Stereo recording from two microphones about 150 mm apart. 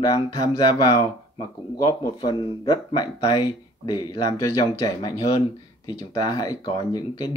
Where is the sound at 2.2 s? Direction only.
30° left (ahead or behind).